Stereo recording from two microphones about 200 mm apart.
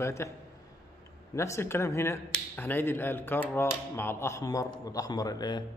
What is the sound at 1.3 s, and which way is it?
Speech, 15° left (ahead or behind).